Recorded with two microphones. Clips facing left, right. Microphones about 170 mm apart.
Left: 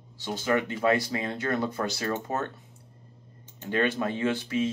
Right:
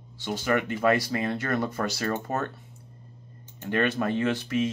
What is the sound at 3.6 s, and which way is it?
Speech, 20° left (ahead or behind).